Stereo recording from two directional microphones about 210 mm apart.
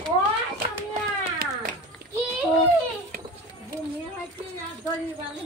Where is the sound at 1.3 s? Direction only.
45° right (ahead or behind).